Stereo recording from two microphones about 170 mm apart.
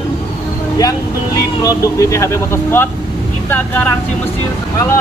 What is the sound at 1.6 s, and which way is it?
Speech, 20° left (ahead or behind).